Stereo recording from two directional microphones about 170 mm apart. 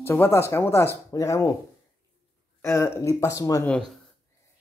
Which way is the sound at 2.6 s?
15° left (ahead or behind).